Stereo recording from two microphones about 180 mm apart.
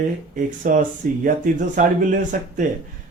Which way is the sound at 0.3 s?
45° right (ahead or behind).